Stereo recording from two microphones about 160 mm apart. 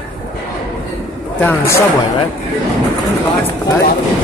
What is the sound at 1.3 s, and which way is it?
Speech, 15° left (ahead or behind).